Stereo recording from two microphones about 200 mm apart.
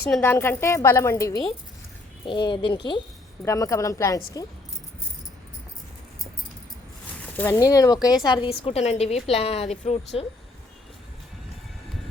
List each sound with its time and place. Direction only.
0.1 s a woman's voice: 10° left (ahead or behind)
7.3 s a woman's voice: 15° left (ahead or behind); by 10.0 s 30° left (ahead or behind)